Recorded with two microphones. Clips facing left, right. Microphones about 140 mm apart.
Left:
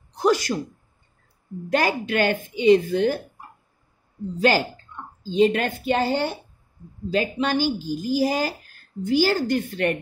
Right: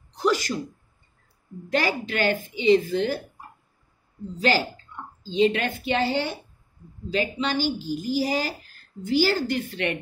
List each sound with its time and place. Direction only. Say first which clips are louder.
0.1 s a sound: left 3 dB; 50° left (ahead or behind)
1.7 s speech: left 3 dB; 50° left (ahead or behind)
4.4 s speech: left 3 dB; 50° left (ahead or behind)